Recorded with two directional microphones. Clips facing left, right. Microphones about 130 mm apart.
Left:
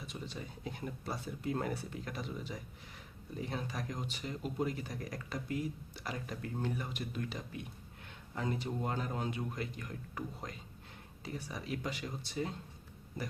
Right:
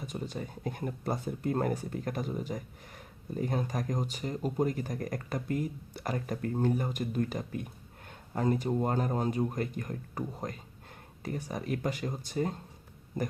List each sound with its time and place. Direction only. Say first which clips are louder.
0.0 s speech: right 7 dB; 45° right (ahead or behind)